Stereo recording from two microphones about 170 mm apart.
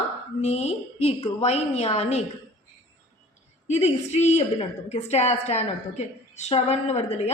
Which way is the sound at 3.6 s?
40° left (ahead or behind).